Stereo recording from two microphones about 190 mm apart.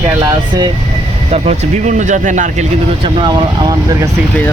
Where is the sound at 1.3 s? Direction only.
40° right (ahead or behind).